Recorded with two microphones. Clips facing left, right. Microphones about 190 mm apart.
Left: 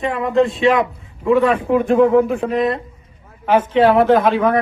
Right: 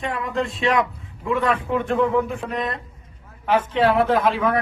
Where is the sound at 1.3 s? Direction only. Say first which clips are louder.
Left 7 dB; 30° left (ahead or behind).